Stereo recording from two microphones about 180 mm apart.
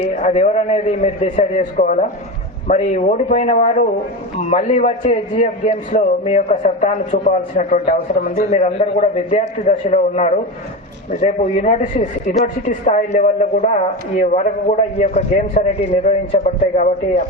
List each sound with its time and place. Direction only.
0.3 s a man's voice: 35° left (ahead or behind)
16.4 s a man's voice: 50° left (ahead or behind)